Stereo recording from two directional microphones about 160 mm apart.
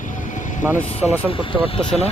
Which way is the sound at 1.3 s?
35° left (ahead or behind).